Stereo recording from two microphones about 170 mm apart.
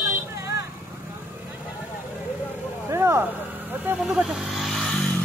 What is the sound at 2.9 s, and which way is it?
Vehicle, 15° right (ahead or behind).